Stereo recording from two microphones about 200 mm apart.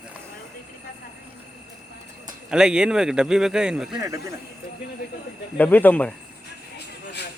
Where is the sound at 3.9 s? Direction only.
15° right (ahead or behind).